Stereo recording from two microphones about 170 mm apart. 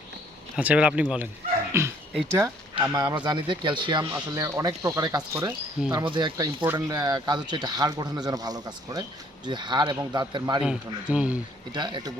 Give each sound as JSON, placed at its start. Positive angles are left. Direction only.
{"t": 0.5, "sound": "speech", "side_deg": -5}
{"t": 10.6, "sound": "speech", "side_deg": -5}
{"t": 11.7, "sound": "speech", "side_deg": -25}